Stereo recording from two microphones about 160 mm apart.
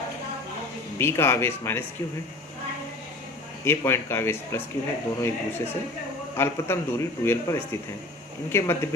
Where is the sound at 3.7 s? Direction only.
15° left (ahead or behind).